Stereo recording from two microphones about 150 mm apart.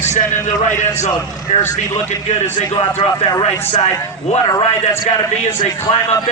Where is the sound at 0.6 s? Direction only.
55° left (ahead or behind).